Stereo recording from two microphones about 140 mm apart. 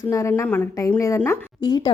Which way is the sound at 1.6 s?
30° left (ahead or behind).